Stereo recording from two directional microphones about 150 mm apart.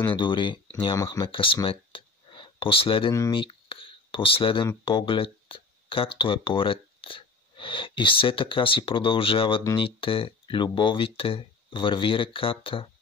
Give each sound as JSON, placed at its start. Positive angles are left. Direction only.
{"t": 0.1, "sound": "speech", "side_deg": 30}
{"t": 3.1, "sound": "speech", "side_deg": 25}
{"t": 3.3, "sound": "a sound", "side_deg": 35}
{"t": 4.8, "sound": "speech", "side_deg": 35}